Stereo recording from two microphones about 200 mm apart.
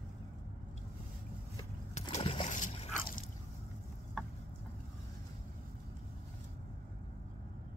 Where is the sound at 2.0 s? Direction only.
30° left (ahead or behind).